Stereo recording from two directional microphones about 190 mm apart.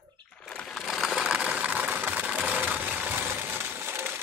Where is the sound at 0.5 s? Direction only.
Centre (ahead or behind).